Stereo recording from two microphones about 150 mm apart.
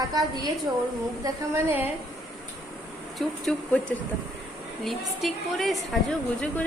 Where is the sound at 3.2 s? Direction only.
5° left (ahead or behind).